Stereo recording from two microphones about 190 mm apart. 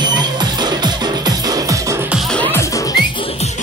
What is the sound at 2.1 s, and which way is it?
Music, centre (ahead or behind).